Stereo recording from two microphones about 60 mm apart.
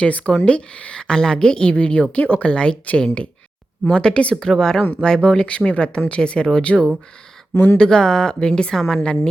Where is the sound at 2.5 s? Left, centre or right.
Centre.